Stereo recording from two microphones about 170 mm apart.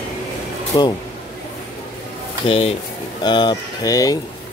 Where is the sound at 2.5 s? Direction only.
35° left (ahead or behind).